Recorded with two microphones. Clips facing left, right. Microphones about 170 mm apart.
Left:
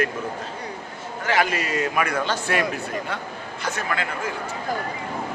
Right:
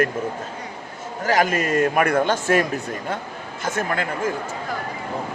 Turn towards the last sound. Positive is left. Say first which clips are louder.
# right 3 dB
turn(degrees=-45)  # may be behind; listen again after turning